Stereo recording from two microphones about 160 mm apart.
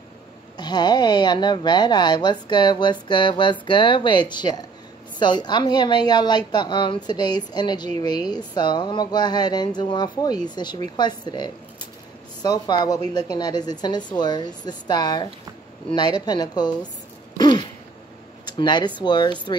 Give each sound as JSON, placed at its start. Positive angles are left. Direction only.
{"t": 0.6, "sound": "a woman's voice", "side_deg": 25}
{"t": 17.4, "sound": "throat clearing", "side_deg": 25}
{"t": 18.4, "sound": "a woman's voice", "side_deg": 25}